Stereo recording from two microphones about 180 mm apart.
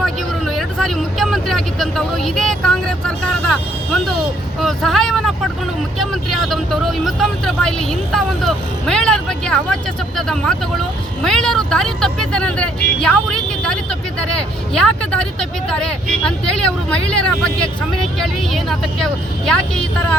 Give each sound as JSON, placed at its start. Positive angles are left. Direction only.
{"t": 0.0, "sound": "speech", "side_deg": 0}
{"t": 11.2, "sound": "speech", "side_deg": 0}